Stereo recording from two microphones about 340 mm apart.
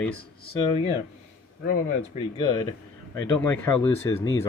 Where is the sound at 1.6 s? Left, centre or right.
Left.